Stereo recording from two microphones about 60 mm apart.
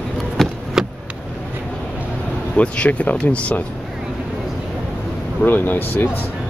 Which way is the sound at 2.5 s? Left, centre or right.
Left.